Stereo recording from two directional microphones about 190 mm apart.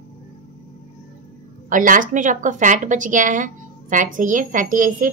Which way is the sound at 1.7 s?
45° right (ahead or behind).